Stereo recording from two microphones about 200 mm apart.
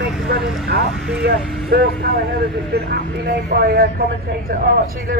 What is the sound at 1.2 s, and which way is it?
Speech, 55° right (ahead or behind).